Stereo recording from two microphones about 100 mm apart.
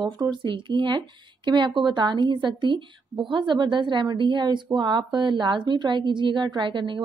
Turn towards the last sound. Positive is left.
turn(degrees=-55)  # may be behind; listen again after turning